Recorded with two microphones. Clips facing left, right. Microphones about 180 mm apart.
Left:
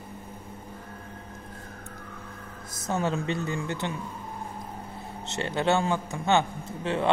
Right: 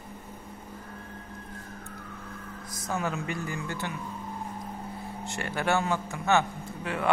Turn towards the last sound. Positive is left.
turn(degrees=25)  # may be behind; listen again after turning